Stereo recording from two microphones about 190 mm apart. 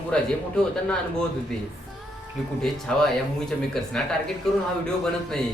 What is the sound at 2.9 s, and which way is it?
A man's voice, 5° left (ahead or behind).